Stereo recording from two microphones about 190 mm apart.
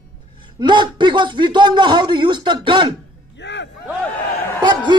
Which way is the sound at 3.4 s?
70° left (ahead or behind).